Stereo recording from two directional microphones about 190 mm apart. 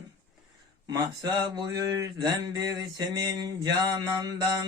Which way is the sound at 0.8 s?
20° right (ahead or behind).